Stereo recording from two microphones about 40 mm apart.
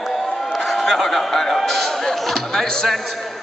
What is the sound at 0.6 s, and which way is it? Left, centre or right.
A man's voice, centre.